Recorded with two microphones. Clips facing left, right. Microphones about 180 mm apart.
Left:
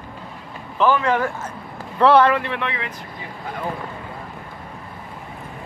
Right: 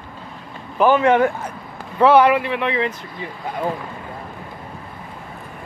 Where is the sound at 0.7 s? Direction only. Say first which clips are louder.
Right 4 dB; 20° right (ahead or behind).